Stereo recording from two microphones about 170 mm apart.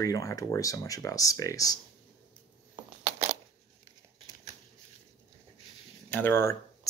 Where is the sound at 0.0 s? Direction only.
20° left (ahead or behind).